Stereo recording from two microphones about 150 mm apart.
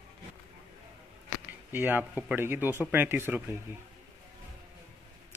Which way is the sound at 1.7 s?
10° right (ahead or behind).